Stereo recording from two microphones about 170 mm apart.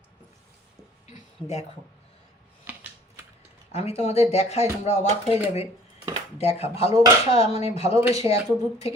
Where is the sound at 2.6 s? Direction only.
10° right (ahead or behind).